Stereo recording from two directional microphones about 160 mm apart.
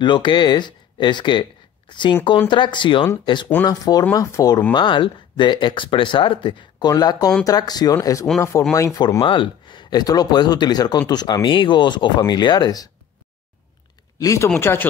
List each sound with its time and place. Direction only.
0.0 s speech: 30° left (ahead or behind)
14.1 s speech: 20° left (ahead or behind)